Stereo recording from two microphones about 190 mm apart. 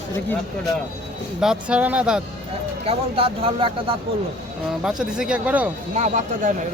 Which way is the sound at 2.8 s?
30° right (ahead or behind).